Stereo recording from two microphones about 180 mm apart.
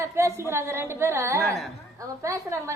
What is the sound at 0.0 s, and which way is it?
A woman's voice, 15° right (ahead or behind).